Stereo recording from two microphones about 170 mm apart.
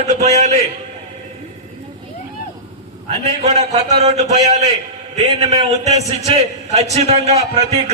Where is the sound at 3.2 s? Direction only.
40° right (ahead or behind).